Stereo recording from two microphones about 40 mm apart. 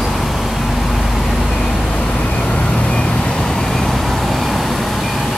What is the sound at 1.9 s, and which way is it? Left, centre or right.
Vehicle, left.